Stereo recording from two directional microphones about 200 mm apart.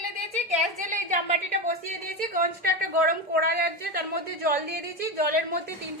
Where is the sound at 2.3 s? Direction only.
50° right (ahead or behind).